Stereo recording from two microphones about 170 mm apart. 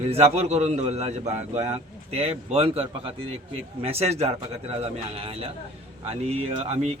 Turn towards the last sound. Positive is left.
turn(degrees=-35)  # may be behind; listen again after turning